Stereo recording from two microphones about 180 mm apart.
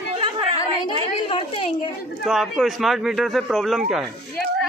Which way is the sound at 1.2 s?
30° left (ahead or behind).